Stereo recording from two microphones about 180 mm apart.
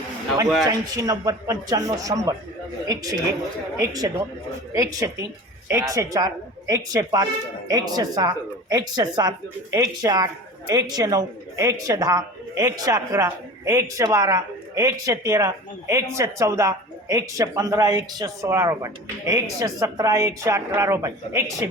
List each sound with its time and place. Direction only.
0.7 s a man's voice: 20° right (ahead or behind)